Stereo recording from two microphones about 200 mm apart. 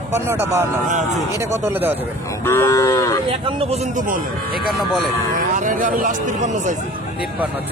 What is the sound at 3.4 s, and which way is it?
Speech, 30° right (ahead or behind).